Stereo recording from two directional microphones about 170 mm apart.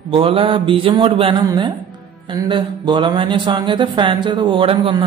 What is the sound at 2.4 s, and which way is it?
Speech, 25° right (ahead or behind).